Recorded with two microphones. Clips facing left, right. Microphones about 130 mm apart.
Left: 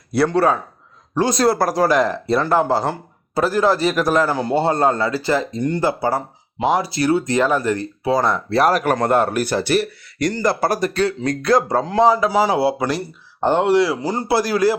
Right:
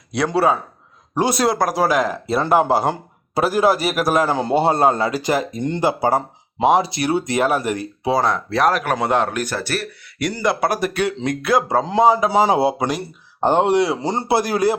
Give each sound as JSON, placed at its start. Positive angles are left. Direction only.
{"t": 0.3, "sound": "speech", "side_deg": -5}
{"t": 2.4, "sound": "speech", "side_deg": -15}
{"t": 8.3, "sound": "speech", "side_deg": 5}
{"t": 10.2, "sound": "speech", "side_deg": -5}